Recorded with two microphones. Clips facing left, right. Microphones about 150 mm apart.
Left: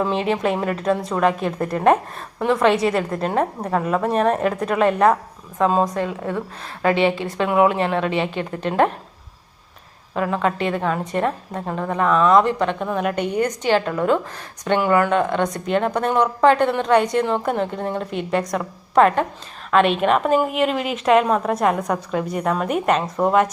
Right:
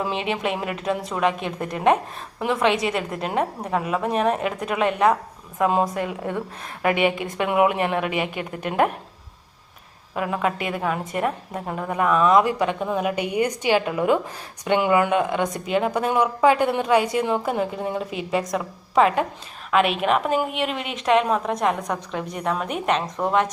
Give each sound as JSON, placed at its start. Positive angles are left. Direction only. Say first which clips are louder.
{"t": 0.6, "sound": "a woman's voice", "louder": "left 5 dB", "side_deg": -5}
{"t": 1.3, "sound": "a woman's voice", "louder": "left 4 dB", "side_deg": 40}
{"t": 1.6, "sound": "a woman's voice", "louder": "left 3 dB", "side_deg": 0}
{"t": 5.5, "sound": "speech", "louder": "left 2 dB", "side_deg": -15}
{"t": 10.2, "sound": "a woman's voice", "louder": "left 3 dB", "side_deg": -10}